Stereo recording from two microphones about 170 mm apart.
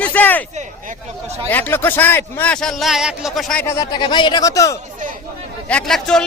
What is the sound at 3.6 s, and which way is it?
Speech, 15° left (ahead or behind).